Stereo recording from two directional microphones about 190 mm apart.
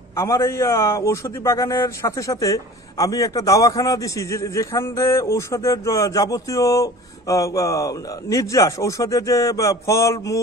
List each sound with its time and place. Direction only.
0.1 s a man's voice: 15° left (ahead or behind)